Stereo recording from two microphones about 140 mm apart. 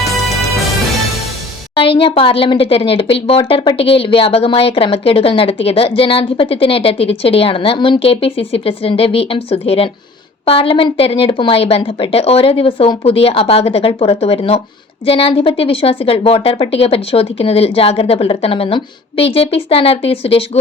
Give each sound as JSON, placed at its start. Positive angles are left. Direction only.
{"t": 1.7, "sound": "a woman's voice", "side_deg": 40}